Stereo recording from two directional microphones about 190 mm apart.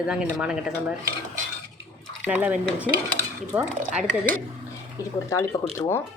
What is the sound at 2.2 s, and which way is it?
Speech, 10° right (ahead or behind).